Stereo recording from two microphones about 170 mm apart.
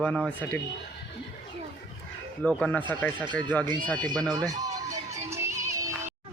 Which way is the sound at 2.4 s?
5° left (ahead or behind).